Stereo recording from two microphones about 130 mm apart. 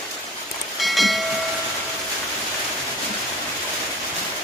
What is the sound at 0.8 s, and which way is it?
Train, centre (ahead or behind).